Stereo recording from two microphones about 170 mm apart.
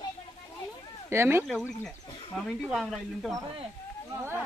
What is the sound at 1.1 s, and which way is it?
Speech, 15° right (ahead or behind).